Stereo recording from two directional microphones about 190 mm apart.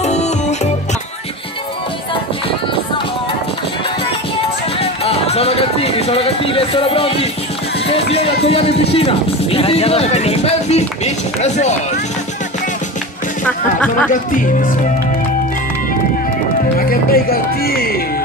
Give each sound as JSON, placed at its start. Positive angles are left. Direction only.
{"t": 0.0, "sound": "music", "side_deg": 35}
{"t": 4.7, "sound": "speech", "side_deg": 30}
{"t": 13.7, "sound": "speech", "side_deg": 5}
{"t": 14.3, "sound": "speech", "side_deg": 45}
{"t": 17.1, "sound": "speech", "side_deg": 50}